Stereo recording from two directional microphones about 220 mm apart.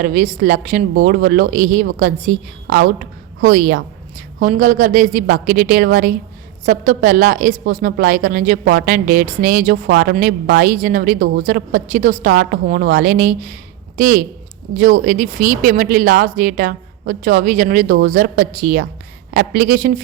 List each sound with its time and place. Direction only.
0.0 s a woman's voice: 35° right (ahead or behind)